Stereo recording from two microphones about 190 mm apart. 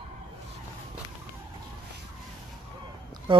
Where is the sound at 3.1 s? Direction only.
25° right (ahead or behind).